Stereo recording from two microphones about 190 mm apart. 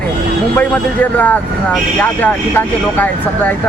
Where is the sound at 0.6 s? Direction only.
10° left (ahead or behind).